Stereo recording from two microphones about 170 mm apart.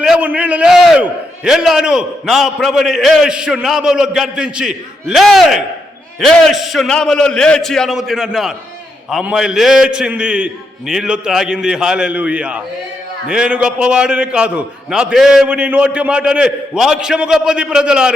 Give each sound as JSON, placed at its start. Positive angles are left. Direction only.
{"t": 0.0, "sound": "a man's voice", "side_deg": -5}